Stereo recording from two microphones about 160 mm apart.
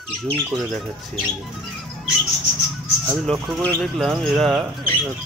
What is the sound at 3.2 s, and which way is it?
Speech, centre (ahead or behind).